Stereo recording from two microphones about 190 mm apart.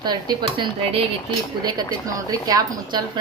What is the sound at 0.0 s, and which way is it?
A woman's voice, 20° right (ahead or behind).